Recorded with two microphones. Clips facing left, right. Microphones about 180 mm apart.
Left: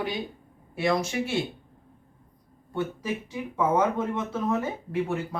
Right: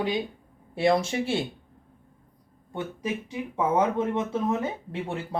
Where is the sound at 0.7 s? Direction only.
30° right (ahead or behind).